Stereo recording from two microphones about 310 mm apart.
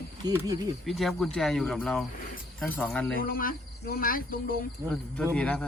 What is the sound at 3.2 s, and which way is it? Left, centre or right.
Speech, left.